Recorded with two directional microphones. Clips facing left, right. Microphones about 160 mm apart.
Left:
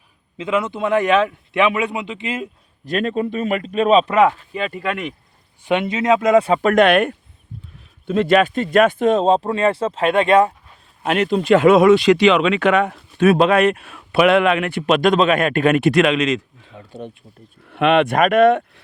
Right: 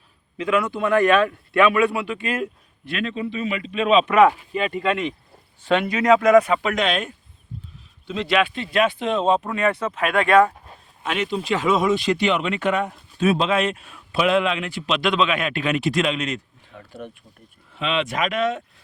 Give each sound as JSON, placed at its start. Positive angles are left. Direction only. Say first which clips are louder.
{"t": 0.3, "sound": "speech", "louder": "left 1 dB", "side_deg": 25}
{"t": 2.8, "sound": "speech", "louder": "left 6 dB", "side_deg": 45}
{"t": 5.6, "sound": "speech", "louder": "left 1 dB", "side_deg": 20}
{"t": 6.6, "sound": "speech", "louder": "left 9 dB", "side_deg": 50}
{"t": 8.0, "sound": "speech", "louder": "left 6 dB", "side_deg": 50}
{"t": 11.0, "sound": "speech", "louder": "left 7 dB", "side_deg": 55}
{"t": 16.7, "sound": "speech", "louder": "left 3 dB", "side_deg": 25}
{"t": 17.7, "sound": "speech", "louder": "left 9 dB", "side_deg": 65}